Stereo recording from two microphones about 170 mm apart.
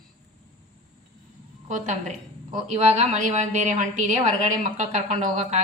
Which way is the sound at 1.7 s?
45° right (ahead or behind).